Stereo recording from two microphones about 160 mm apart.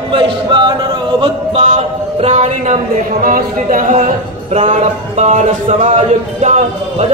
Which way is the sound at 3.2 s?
55° right (ahead or behind).